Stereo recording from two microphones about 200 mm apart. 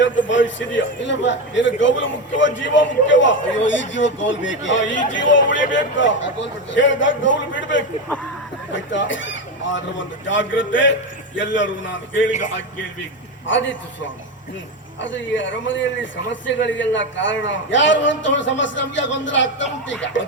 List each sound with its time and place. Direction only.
0.0 s a man's voice: 70° left (ahead or behind)
13.5 s a man's voice: 65° left (ahead or behind)
15.0 s a man's voice: 70° left (ahead or behind)